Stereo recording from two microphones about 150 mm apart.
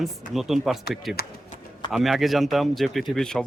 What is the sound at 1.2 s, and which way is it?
Speech, 90° left.